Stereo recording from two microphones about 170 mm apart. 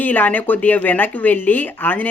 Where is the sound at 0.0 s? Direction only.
10° left (ahead or behind).